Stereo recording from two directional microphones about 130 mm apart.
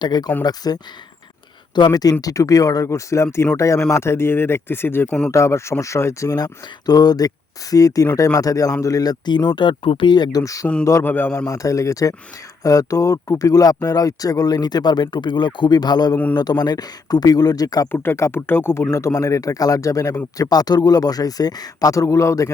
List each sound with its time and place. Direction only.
0.0 s a man's voice: 30° left (ahead or behind); by 11.4 s 15° left (ahead or behind)
11.4 s speech: 25° left (ahead or behind)
17.9 s speech: 15° left (ahead or behind)